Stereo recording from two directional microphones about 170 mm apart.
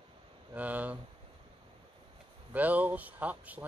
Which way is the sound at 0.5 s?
10° right (ahead or behind).